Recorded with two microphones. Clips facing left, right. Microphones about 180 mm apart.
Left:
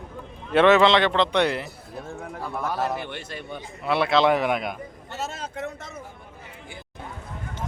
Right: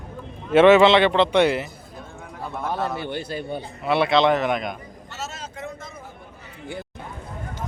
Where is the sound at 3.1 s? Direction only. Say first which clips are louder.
Right 7 dB; 35° right (ahead or behind).